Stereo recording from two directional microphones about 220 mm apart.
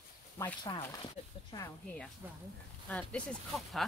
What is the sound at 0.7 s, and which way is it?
Speech, 20° left (ahead or behind).